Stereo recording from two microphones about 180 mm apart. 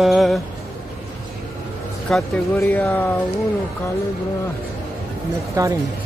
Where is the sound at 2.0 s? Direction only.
5° left (ahead or behind).